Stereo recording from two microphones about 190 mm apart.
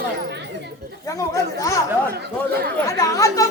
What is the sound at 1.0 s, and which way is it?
Speech, 15° left (ahead or behind).